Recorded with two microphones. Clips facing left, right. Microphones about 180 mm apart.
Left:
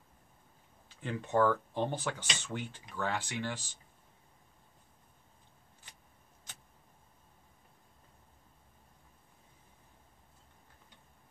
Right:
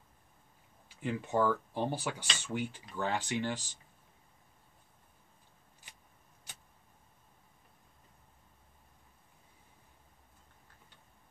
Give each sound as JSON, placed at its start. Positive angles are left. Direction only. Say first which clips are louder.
{"t": 1.0, "sound": "speech", "louder": "left 1 dB", "side_deg": -10}